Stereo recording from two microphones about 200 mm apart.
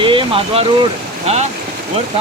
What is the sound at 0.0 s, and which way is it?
Speech, 25° right (ahead or behind).